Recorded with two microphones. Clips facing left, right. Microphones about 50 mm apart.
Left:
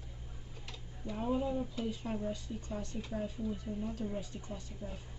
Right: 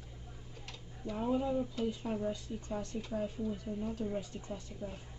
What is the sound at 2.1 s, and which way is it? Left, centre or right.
Speech, centre.